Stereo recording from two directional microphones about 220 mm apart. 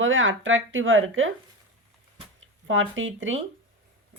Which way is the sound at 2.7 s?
60° right (ahead or behind).